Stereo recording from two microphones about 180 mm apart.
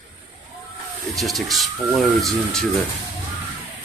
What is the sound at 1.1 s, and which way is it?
Speech, centre (ahead or behind).